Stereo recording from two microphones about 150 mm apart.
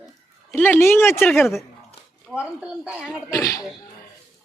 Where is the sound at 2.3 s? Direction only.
10° right (ahead or behind).